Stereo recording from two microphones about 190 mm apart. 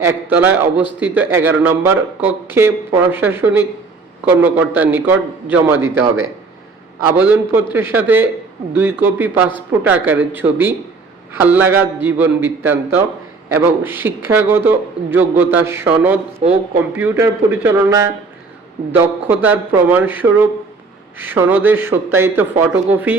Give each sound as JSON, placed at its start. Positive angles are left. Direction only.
{"t": 0.0, "sound": "a man's voice", "side_deg": -10}
{"t": 7.2, "sound": "a man's voice", "side_deg": -10}
{"t": 16.4, "sound": "speech", "side_deg": -35}
{"t": 17.0, "sound": "a man's voice", "side_deg": -10}